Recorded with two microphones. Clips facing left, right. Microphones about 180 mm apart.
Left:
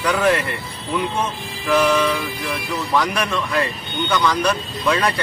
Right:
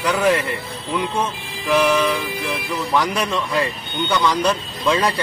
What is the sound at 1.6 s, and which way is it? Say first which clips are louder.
Speech: even; 15° right (ahead or behind).